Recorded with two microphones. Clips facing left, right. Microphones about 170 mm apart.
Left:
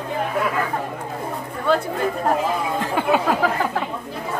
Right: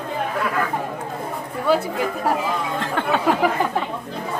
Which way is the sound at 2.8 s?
10° left (ahead or behind).